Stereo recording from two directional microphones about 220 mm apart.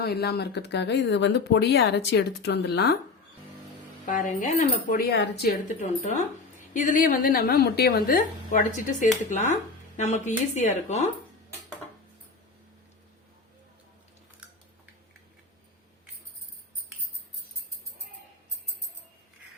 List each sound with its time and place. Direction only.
0.0 s speech: 45° left (ahead or behind)
4.0 s a woman's voice: 35° left (ahead or behind)
4.9 s a woman's voice: 45° left (ahead or behind)